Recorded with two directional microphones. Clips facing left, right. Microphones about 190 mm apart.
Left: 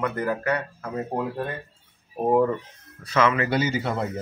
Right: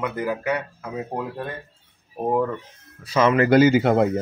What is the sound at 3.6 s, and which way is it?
Speech, 90° right.